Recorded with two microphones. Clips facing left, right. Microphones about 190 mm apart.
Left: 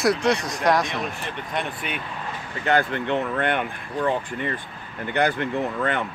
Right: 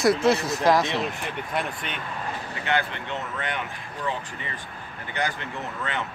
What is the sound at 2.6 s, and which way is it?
Speech, 45° left (ahead or behind).